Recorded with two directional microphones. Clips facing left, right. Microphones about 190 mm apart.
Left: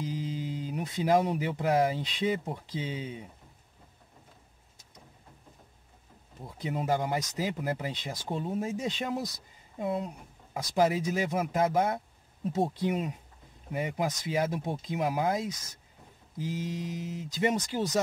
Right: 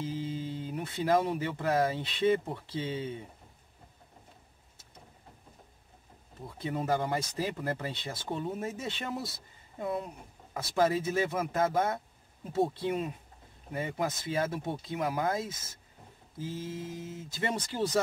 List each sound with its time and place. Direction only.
0.0 s a sound: 25° right (ahead or behind)
0.7 s speech: 20° left (ahead or behind)
6.4 s speech: 20° left (ahead or behind)